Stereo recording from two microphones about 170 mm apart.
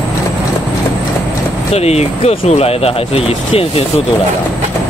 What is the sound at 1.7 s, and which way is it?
Speech, 40° left (ahead or behind).